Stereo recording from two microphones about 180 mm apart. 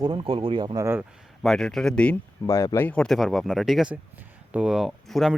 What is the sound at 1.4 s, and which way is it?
Speech, centre (ahead or behind).